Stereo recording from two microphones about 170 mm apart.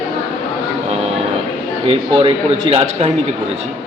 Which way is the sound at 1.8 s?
30° right (ahead or behind).